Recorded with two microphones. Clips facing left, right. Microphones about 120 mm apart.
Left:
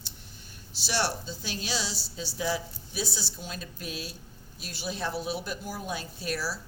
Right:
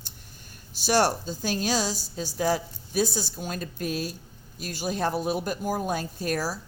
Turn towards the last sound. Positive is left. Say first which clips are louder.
# right 5 dB
turn(degrees=-45)  # may be behind; listen again after turning